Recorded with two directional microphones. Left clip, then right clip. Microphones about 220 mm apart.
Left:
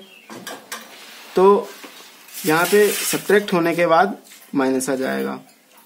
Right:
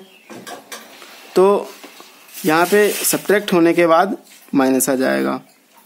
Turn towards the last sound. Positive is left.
turn(degrees=-45)  # may be behind; listen again after turning